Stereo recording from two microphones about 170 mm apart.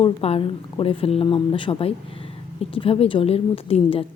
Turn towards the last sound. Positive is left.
turn(degrees=35)  # may be behind; listen again after turning